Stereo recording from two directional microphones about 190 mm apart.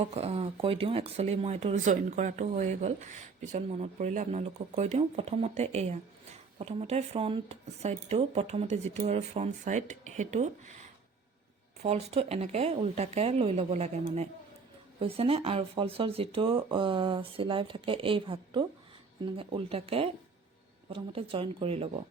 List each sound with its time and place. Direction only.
0.0 s speech: 30° right (ahead or behind)
15.0 s speech: 30° right (ahead or behind)